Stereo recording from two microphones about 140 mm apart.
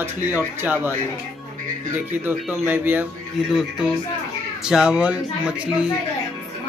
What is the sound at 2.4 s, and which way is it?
Speech, 10° right (ahead or behind).